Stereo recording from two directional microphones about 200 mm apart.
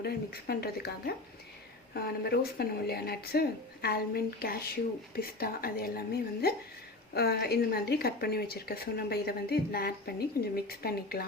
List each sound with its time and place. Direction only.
0.0 s speech: 50° left (ahead or behind)
7.1 s speech: 50° left (ahead or behind)